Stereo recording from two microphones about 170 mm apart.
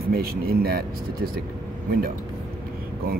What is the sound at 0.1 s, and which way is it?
Speech, 65° right (ahead or behind).